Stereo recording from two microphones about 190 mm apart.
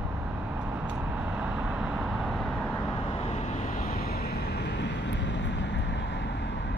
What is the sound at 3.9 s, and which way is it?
Vehicle, 55° left (ahead or behind).